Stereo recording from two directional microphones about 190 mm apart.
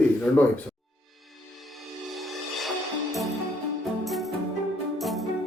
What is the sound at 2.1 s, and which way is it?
Music, centre (ahead or behind).